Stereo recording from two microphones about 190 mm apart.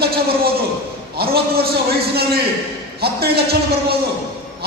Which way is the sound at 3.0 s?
55° right (ahead or behind).